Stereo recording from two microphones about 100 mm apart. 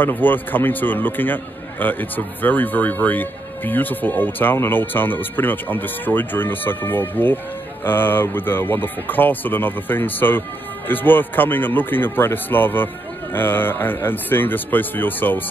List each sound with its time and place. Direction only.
0.0 s a man's voice: 20° left (ahead or behind)